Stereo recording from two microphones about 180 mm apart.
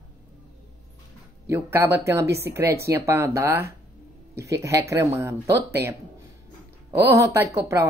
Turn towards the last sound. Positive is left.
turn(degrees=-15)  # may be behind; listen again after turning